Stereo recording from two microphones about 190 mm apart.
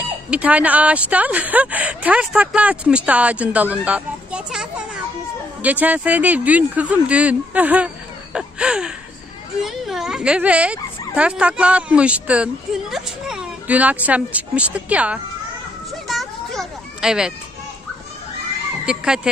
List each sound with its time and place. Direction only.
0.0 s speech: 5° right (ahead or behind)
16.1 s children playing: centre (ahead or behind)
18.9 s speech: 5° right (ahead or behind)